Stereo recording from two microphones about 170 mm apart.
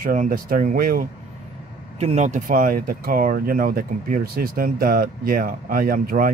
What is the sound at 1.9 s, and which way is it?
A man's voice, 40° right (ahead or behind).